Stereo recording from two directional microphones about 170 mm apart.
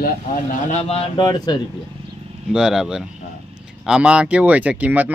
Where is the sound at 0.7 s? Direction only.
35° left (ahead or behind).